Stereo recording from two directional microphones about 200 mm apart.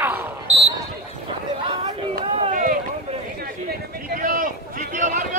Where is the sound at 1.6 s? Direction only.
25° right (ahead or behind).